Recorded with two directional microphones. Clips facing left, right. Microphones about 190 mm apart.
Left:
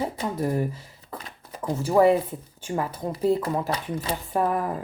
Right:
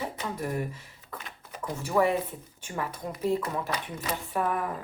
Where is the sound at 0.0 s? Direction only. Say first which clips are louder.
Left 6 dB; 35° left (ahead or behind).